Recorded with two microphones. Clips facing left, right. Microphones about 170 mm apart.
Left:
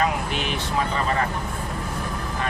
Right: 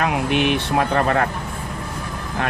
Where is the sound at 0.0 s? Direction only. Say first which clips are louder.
Right 5 dB; 65° right (ahead or behind).